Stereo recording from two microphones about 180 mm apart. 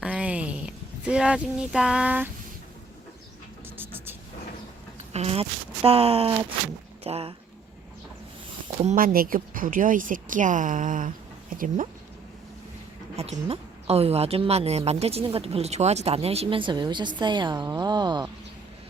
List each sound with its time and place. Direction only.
0.0 s a sound: 5° right (ahead or behind)
3.8 s vehicle: 10° right (ahead or behind)
5.1 s speech: 35° right (ahead or behind)
8.8 s speech: 45° right (ahead or behind)
13.2 s speech: 35° right (ahead or behind)